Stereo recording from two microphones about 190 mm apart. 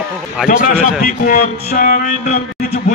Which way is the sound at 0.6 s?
50° left (ahead or behind).